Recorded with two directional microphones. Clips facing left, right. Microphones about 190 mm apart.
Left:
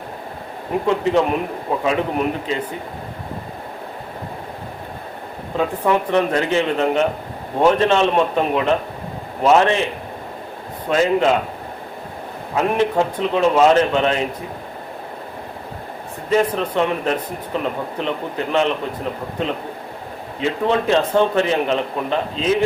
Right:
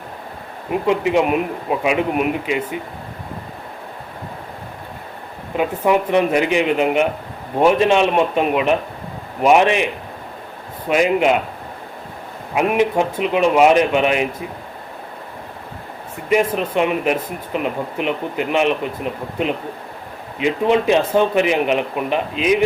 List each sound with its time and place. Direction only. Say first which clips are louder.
0.9 s speech: right 1 dB; 15° right (ahead or behind)
5.5 s speech: right 2 dB; 10° right (ahead or behind)
12.5 s speech: right 1 dB; 15° right (ahead or behind)
16.3 s speech: right 1 dB; 15° right (ahead or behind)
20.4 s speech: right 3 dB; 15° right (ahead or behind)